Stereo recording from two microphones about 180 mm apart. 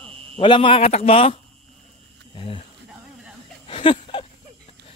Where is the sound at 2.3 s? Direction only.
30° left (ahead or behind).